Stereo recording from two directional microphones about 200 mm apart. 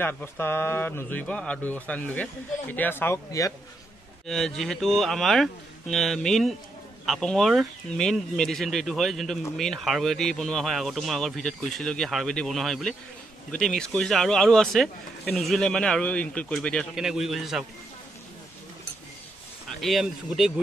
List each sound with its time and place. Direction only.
0.0 s speech: 10° left (ahead or behind)
4.3 s speech: centre (ahead or behind)
19.7 s speech: centre (ahead or behind)